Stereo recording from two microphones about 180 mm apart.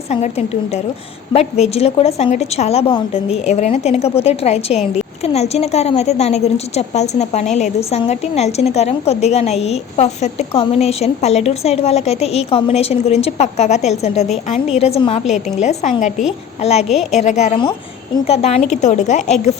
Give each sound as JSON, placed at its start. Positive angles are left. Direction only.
{"t": 0.1, "sound": "a woman's voice", "side_deg": 35}
{"t": 16.9, "sound": "a woman's voice", "side_deg": 0}
{"t": 17.2, "sound": "a woman's voice", "side_deg": 40}